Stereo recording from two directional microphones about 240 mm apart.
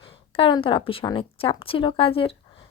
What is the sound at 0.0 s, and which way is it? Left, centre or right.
Speech, left.